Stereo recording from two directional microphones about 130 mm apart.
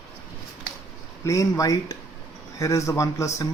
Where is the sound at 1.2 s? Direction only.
25° left (ahead or behind).